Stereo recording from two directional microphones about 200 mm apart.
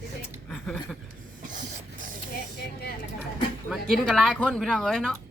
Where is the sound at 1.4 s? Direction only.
40° right (ahead or behind).